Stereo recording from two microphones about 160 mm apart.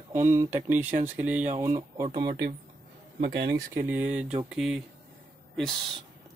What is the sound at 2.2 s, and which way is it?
Speech, 90° right.